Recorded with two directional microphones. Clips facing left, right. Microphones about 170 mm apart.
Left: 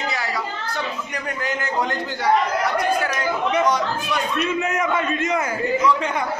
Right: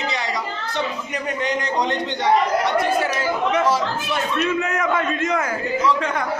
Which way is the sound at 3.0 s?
30° right (ahead or behind).